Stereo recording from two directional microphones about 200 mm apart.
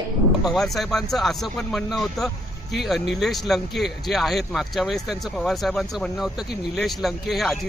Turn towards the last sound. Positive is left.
turn(degrees=0)  # may be behind; listen again after turning